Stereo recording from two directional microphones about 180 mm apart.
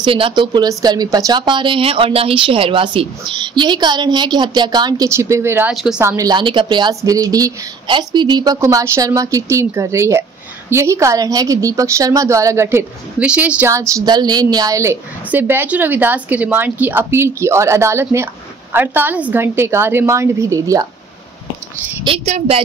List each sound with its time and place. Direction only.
0.0 s a woman's voice: 30° right (ahead or behind)
22.0 s a woman's voice: 35° right (ahead or behind)